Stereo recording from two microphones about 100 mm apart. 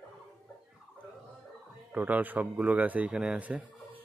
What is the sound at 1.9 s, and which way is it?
Speech, 15° right (ahead or behind).